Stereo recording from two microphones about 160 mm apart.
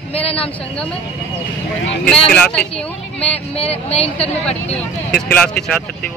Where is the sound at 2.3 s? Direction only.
5° left (ahead or behind).